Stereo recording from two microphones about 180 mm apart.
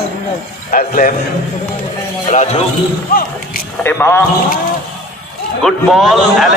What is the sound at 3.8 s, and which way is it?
Speech, 10° left (ahead or behind).